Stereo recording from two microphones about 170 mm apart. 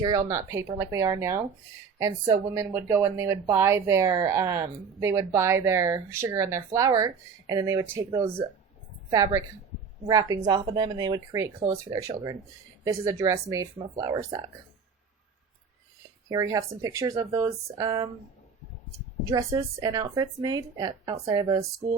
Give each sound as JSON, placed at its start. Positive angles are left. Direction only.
{"t": 0.0, "sound": "a woman's voice", "side_deg": -25}
{"t": 16.3, "sound": "a woman's voice", "side_deg": -20}
{"t": 19.3, "sound": "a woman's voice", "side_deg": -20}